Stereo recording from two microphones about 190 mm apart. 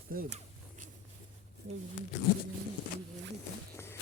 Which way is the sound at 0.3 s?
35° right (ahead or behind).